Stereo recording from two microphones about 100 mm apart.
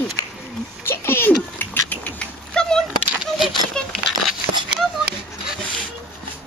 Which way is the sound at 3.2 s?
5° right (ahead or behind).